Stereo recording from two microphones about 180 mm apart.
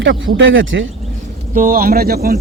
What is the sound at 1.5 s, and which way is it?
Speech, 50° right (ahead or behind).